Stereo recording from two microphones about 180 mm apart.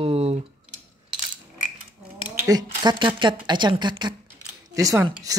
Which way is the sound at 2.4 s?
20° right (ahead or behind).